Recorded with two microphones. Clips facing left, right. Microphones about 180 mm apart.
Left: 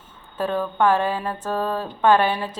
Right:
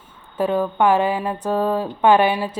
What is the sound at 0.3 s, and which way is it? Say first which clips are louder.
A woman's voice: right 3 dB; 15° right (ahead or behind).